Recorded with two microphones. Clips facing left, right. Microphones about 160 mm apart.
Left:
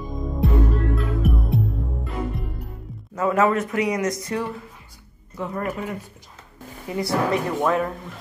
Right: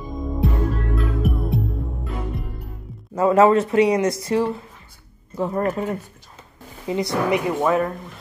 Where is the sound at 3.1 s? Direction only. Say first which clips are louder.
Right 5 dB; 30° right (ahead or behind).